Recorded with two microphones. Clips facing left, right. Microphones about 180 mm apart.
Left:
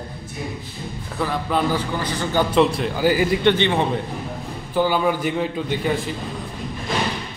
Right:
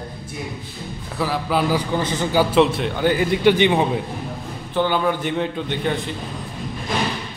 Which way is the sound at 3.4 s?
15° right (ahead or behind).